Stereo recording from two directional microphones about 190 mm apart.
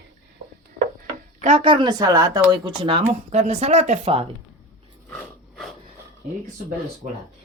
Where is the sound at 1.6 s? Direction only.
25° right (ahead or behind).